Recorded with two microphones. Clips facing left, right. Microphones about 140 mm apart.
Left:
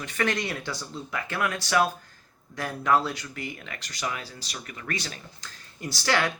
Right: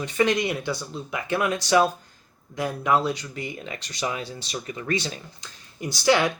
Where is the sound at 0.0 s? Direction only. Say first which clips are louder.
Right 6 dB; 15° right (ahead or behind).